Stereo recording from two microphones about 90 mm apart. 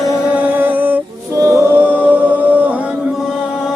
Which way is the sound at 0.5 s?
20° right (ahead or behind).